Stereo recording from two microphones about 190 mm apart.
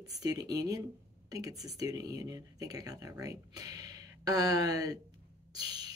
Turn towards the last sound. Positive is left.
turn(degrees=-20)  # may be behind; listen again after turning